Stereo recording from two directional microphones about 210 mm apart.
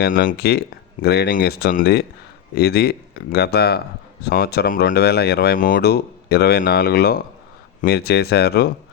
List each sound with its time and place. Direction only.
0.0 s speech: 40° left (ahead or behind)